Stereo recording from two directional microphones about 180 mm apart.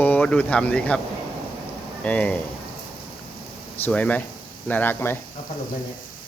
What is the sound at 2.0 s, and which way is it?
Speech, 5° left (ahead or behind).